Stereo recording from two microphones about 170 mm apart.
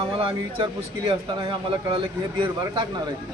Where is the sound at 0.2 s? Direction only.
30° right (ahead or behind).